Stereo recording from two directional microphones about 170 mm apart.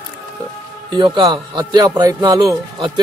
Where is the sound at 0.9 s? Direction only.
30° right (ahead or behind).